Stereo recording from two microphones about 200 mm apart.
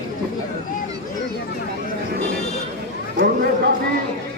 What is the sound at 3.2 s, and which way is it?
Speech, 50° right (ahead or behind).